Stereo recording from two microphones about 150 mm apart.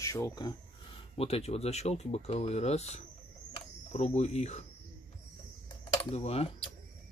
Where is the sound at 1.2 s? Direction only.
45° left (ahead or behind).